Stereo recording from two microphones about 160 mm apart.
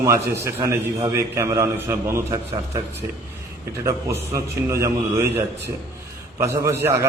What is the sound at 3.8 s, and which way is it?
A man's voice, 15° right (ahead or behind).